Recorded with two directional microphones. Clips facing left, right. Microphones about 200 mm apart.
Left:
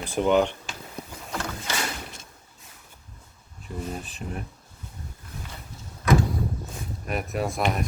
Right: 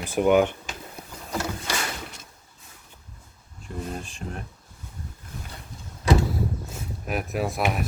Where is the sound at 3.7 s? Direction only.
5° left (ahead or behind).